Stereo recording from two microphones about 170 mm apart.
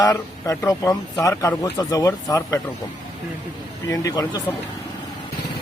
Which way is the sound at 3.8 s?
20° left (ahead or behind).